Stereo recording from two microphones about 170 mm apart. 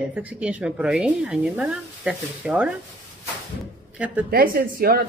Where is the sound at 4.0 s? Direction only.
10° right (ahead or behind).